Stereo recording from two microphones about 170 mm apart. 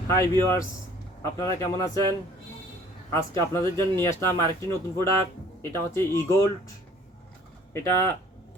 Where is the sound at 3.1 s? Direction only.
15° left (ahead or behind).